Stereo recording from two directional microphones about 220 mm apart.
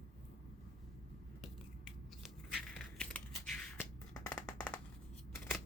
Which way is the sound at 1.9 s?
Centre (ahead or behind).